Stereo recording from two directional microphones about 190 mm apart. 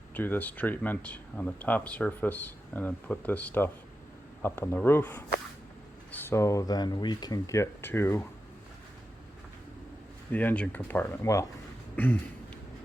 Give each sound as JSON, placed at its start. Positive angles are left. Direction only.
{"t": 0.1, "sound": "speech", "side_deg": 10}
{"t": 10.3, "sound": "speech", "side_deg": 5}